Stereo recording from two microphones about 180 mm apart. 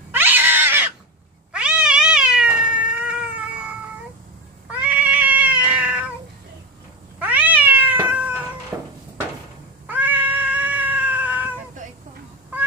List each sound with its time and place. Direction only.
0.1 s cat: 10° right (ahead or behind)
7.2 s cat: 10° right (ahead or behind)
8.7 s a sound: 10° right (ahead or behind)
9.8 s cat: 10° right (ahead or behind)